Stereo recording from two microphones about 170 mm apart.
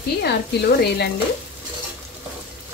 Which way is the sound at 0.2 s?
70° left (ahead or behind).